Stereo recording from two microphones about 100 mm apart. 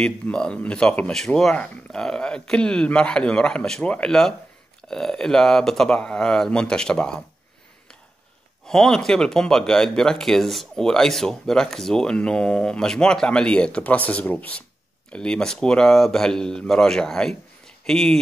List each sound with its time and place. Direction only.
0.0 s speech: 10° left (ahead or behind)
8.6 s speech: 5° left (ahead or behind)